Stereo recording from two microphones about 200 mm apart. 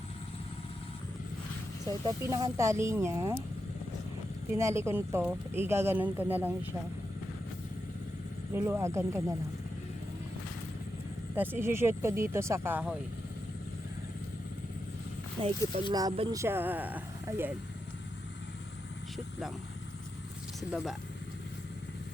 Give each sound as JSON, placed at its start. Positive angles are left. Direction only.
{"t": 1.9, "sound": "speech", "side_deg": -20}
{"t": 4.5, "sound": "speech", "side_deg": -15}
{"t": 8.5, "sound": "speech", "side_deg": -10}
{"t": 11.3, "sound": "speech", "side_deg": -10}
{"t": 15.4, "sound": "speech", "side_deg": -30}
{"t": 16.3, "sound": "speech", "side_deg": -15}
{"t": 20.6, "sound": "speech", "side_deg": 0}